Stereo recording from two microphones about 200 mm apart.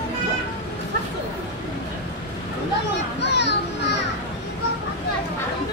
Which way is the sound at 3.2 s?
60° left (ahead or behind).